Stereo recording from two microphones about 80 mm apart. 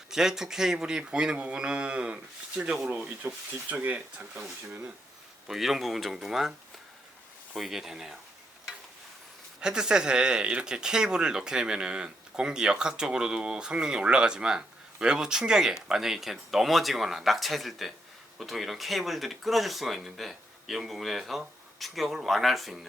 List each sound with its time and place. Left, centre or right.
0.1 s speech: centre
5.5 s speech: centre
7.5 s speech: centre
9.6 s speech: centre